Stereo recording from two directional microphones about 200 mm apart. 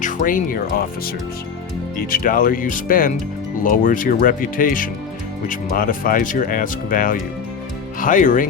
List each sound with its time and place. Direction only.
0.0 s speech: 40° left (ahead or behind)
2.0 s speech: 45° left (ahead or behind)